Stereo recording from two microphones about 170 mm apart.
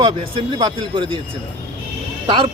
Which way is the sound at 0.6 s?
30° right (ahead or behind).